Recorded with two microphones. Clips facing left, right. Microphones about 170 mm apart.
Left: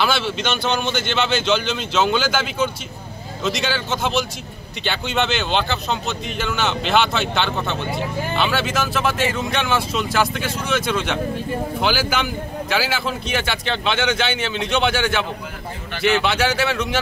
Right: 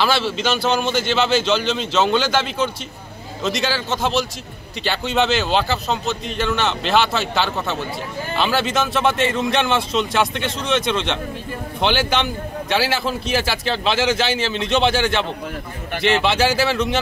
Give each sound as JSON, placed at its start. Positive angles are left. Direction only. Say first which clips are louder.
{"t": 0.0, "sound": "speech", "louder": "right 2 dB", "side_deg": 0}
{"t": 16.1, "sound": "speech", "louder": "right 1 dB", "side_deg": -30}
{"t": 16.3, "sound": "speech", "louder": "right 2 dB", "side_deg": 0}